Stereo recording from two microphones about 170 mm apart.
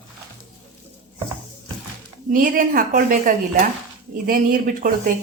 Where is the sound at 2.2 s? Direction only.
50° right (ahead or behind).